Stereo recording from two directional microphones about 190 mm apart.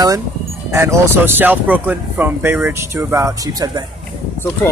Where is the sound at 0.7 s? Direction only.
15° right (ahead or behind).